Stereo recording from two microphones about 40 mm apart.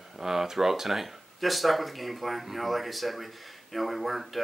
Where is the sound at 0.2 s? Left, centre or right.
Centre.